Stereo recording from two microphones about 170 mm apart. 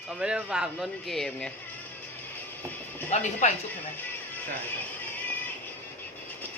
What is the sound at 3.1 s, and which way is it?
Speech, 45° left (ahead or behind).